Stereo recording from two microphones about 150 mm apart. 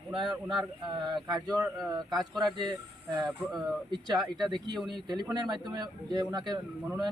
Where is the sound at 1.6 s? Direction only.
Centre (ahead or behind).